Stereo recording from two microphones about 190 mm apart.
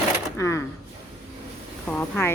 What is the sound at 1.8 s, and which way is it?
Speech, 10° left (ahead or behind).